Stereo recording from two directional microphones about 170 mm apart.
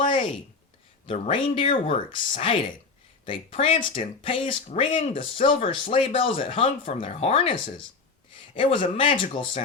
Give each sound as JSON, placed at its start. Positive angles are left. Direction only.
{"t": 1.0, "sound": "speech", "side_deg": 35}